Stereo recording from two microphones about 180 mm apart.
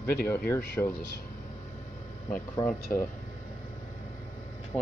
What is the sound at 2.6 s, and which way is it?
Speech, 15° left (ahead or behind).